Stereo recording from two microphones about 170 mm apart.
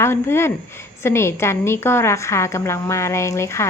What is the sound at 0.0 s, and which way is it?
A woman's voice, 15° left (ahead or behind).